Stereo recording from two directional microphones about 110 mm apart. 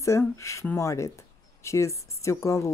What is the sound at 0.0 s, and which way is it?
Speech, 25° left (ahead or behind).